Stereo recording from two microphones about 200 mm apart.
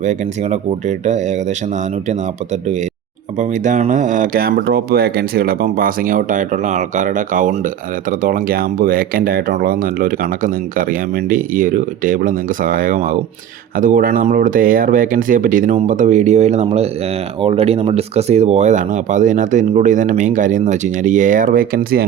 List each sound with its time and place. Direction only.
0.0 s speech: 35° right (ahead or behind)
3.3 s speech: 40° right (ahead or behind)